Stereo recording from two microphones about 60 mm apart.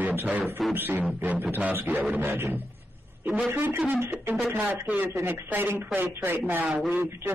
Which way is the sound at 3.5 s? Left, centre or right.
Right.